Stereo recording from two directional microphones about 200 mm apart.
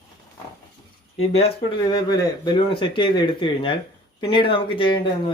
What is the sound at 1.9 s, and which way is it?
Speech, 20° left (ahead or behind).